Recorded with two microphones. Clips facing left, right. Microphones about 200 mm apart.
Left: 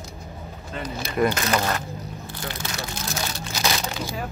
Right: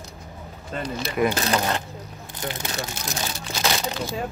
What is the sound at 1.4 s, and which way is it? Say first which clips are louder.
Speech: even; 30° right (ahead or behind).